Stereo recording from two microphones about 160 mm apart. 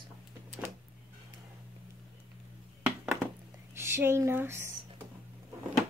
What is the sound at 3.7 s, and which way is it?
Speech, 15° right (ahead or behind).